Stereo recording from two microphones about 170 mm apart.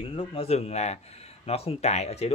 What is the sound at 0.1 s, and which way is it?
Speech, 35° left (ahead or behind).